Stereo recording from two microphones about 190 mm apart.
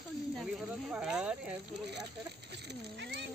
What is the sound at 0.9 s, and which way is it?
Speech, 5° right (ahead or behind).